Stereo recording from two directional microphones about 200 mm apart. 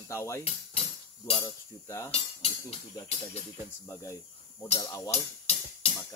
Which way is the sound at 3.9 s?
15° left (ahead or behind).